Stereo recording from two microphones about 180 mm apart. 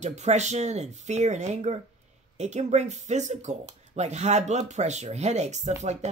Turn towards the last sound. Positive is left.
turn(degrees=-40)  # may be behind; listen again after turning